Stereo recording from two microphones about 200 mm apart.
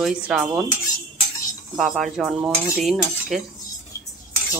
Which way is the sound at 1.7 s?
Centre (ahead or behind).